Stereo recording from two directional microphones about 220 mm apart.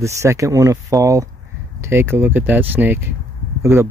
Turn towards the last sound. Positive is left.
turn(degrees=-10)  # may be behind; listen again after turning